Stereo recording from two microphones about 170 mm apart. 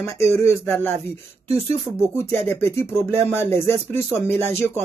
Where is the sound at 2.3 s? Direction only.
10° left (ahead or behind).